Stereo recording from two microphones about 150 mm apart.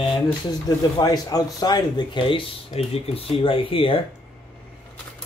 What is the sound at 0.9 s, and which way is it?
Speech, 25° left (ahead or behind).